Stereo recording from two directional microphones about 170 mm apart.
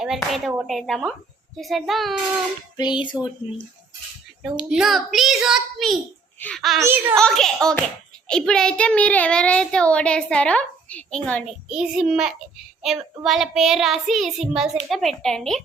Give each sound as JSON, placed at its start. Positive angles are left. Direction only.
{"t": 0.0, "sound": "child singing", "side_deg": 0}
{"t": 2.7, "sound": "child singing", "side_deg": 25}
{"t": 4.7, "sound": "child singing", "side_deg": 0}
{"t": 6.8, "sound": "a child's voice", "side_deg": -15}
{"t": 7.2, "sound": "child singing", "side_deg": 0}
{"t": 8.3, "sound": "a child's voice", "side_deg": 5}
{"t": 11.7, "sound": "child singing", "side_deg": -5}